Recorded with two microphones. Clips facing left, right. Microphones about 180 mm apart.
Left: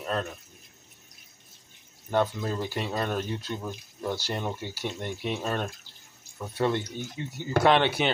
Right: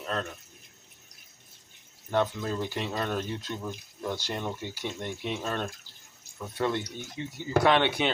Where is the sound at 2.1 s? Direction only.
10° left (ahead or behind).